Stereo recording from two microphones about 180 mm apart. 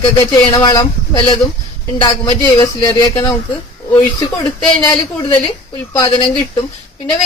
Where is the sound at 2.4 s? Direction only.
20° left (ahead or behind).